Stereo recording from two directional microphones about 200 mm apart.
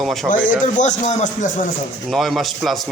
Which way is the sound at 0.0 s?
Centre (ahead or behind).